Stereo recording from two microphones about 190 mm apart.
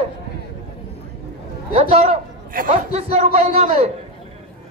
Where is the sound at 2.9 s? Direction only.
35° right (ahead or behind).